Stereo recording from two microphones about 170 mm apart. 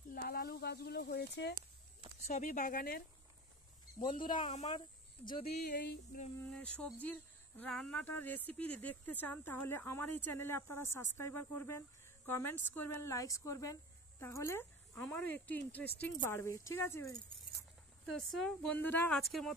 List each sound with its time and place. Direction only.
0.1 s speech: 60° left (ahead or behind); by 1.6 s 85° left
2.2 s speech: 45° left (ahead or behind)
4.0 s speech: 30° left (ahead or behind)
4.5 s speech: 40° left (ahead or behind)
5.4 s speech: 65° left (ahead or behind)
6.5 s speech: 5° left (ahead or behind)
18.1 s speech: 5° left (ahead or behind)